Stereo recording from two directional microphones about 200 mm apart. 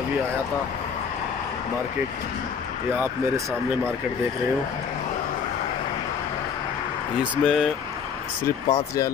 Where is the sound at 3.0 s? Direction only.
15° right (ahead or behind).